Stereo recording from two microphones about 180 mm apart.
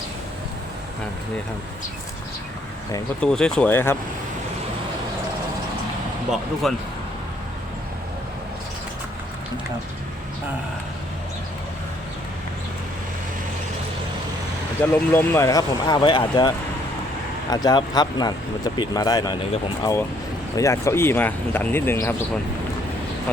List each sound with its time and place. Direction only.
3.2 s speech: 5° left (ahead or behind)
6.3 s speech: centre (ahead or behind)
14.8 s speech: 15° left (ahead or behind)